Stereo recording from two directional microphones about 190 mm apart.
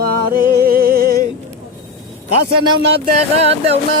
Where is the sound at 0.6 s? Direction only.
50° right (ahead or behind).